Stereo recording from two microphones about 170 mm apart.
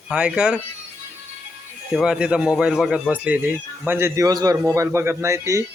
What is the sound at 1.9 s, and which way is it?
Speech, 5° right (ahead or behind).